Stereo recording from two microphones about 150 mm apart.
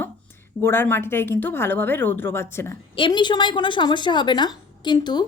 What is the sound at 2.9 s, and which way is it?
A woman's voice, 30° left (ahead or behind).